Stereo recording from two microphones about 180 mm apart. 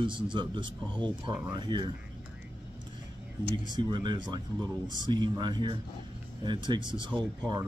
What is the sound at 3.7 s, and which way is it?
Speech, 25° right (ahead or behind).